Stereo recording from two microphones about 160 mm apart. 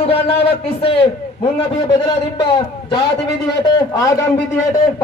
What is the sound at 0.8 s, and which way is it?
A man's voice, 35° left (ahead or behind).